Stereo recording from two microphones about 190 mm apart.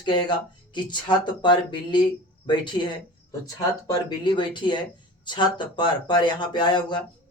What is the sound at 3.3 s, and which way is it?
Speech, 20° left (ahead or behind).